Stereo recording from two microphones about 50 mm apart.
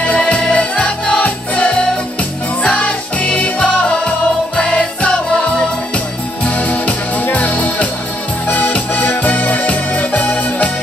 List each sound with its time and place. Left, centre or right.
0.0 s music: left
8.5 s accordion: left